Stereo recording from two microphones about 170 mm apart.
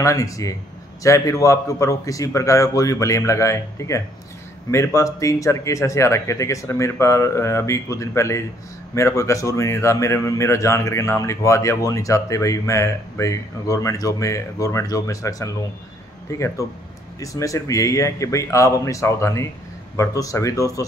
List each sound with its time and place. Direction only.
0.0 s a man's voice: 20° left (ahead or behind)